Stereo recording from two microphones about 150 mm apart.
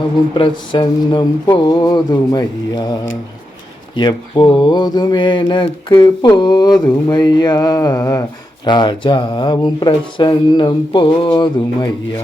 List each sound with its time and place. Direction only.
0.3 s speech: 35° left (ahead or behind)
3.9 s speech: 30° left (ahead or behind)
8.6 s speech: 30° left (ahead or behind)